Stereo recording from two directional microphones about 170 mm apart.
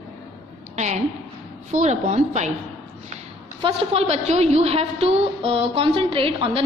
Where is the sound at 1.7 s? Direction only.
45° right (ahead or behind).